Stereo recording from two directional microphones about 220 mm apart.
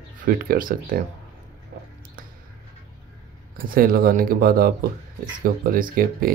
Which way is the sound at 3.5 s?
40° right (ahead or behind).